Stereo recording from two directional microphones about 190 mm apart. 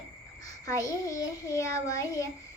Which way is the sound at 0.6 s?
20° left (ahead or behind).